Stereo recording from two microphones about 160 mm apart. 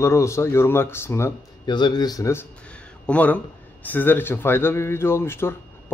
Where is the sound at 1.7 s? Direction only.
30° left (ahead or behind).